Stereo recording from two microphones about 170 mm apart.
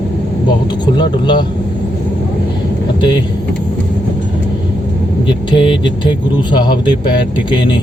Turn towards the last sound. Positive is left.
turn(degrees=25)  # may be behind; listen again after turning